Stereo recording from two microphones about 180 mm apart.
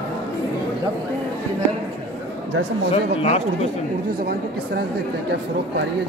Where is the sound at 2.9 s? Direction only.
35° left (ahead or behind).